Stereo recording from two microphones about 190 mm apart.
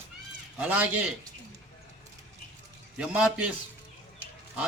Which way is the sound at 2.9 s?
5° right (ahead or behind).